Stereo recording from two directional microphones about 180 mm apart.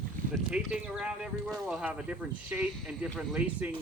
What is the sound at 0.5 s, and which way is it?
Speech, 5° right (ahead or behind).